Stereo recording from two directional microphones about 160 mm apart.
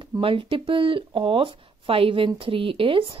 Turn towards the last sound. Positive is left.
turn(degrees=-35)  # may be behind; listen again after turning